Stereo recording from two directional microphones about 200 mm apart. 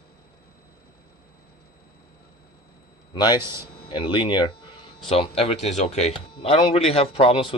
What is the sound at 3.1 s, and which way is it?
Speech, 20° left (ahead or behind).